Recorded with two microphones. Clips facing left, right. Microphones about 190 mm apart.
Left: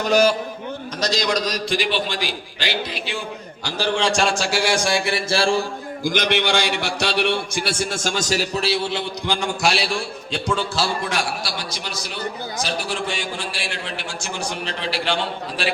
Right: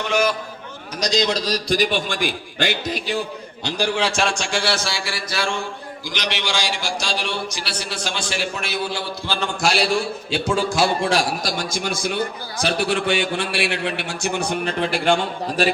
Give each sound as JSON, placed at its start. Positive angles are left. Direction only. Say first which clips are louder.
{"t": 0.0, "sound": "a man's voice", "louder": "left 4 dB", "side_deg": 35}
{"t": 1.0, "sound": "a man's voice", "louder": "right 1 dB", "side_deg": -20}
{"t": 3.6, "sound": "a man's voice", "louder": "even", "side_deg": -15}
{"t": 4.9, "sound": "mantra", "louder": "left 6 dB", "side_deg": 20}
{"t": 6.1, "sound": "a man's voice", "louder": "left 7 dB", "side_deg": 55}
{"t": 9.6, "sound": "a man's voice", "louder": "right 2 dB", "side_deg": 0}
{"t": 11.0, "sound": "a man's voice", "louder": "right 5 dB", "side_deg": -35}
{"t": 12.6, "sound": "a man's voice", "louder": "right 7 dB", "side_deg": -60}